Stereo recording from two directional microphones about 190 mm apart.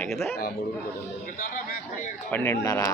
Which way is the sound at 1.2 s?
45° left (ahead or behind).